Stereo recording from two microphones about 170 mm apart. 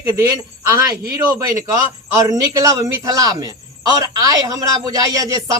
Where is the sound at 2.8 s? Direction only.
20° right (ahead or behind).